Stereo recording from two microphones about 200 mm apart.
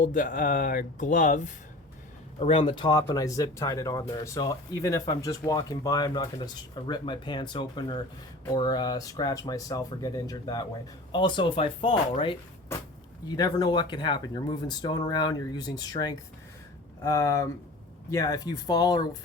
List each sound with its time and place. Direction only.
0.0 s speech: 40° left (ahead or behind)
2.4 s speech: 30° left (ahead or behind)